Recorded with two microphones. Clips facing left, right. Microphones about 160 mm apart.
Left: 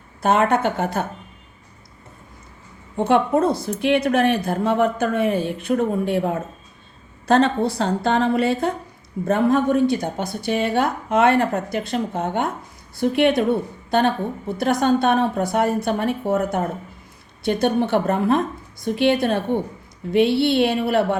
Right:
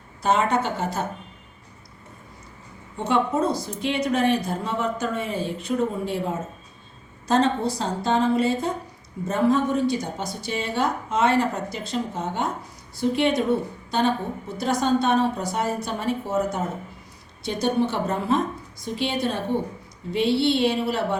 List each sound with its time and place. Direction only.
0.2 s a woman's voice: 55° left (ahead or behind)
3.0 s a woman's voice: 55° left (ahead or behind)
14.6 s a woman's voice: 55° left (ahead or behind)